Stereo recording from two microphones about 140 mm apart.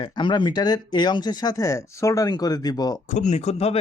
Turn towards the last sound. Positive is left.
turn(degrees=50)  # may be behind; listen again after turning